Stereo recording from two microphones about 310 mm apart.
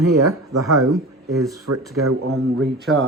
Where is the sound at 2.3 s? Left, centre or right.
Right.